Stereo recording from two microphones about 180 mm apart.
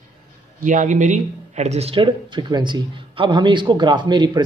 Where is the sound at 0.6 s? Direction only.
45° right (ahead or behind).